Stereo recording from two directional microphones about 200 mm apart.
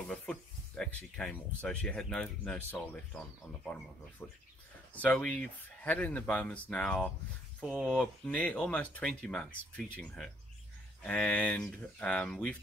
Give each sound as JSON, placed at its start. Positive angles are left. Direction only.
{"t": 0.1, "sound": "speech", "side_deg": 5}
{"t": 4.2, "sound": "speech", "side_deg": 10}